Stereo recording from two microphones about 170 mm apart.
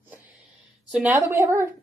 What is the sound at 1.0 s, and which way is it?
Speech, 15° right (ahead or behind).